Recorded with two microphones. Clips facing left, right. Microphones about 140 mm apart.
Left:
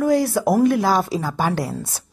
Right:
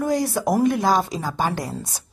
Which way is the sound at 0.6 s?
20° right (ahead or behind).